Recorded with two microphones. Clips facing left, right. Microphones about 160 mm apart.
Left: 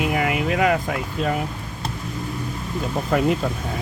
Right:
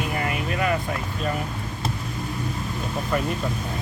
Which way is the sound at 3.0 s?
90° left.